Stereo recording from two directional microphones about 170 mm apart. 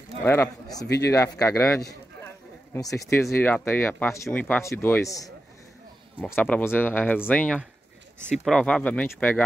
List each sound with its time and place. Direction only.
0.2 s speech: 15° left (ahead or behind)
0.8 s speech: 75° left (ahead or behind)
1.4 s a man's voice: 20° left (ahead or behind)